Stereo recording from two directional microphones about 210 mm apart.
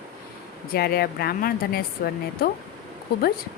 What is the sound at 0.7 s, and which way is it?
Speech, 50° left (ahead or behind).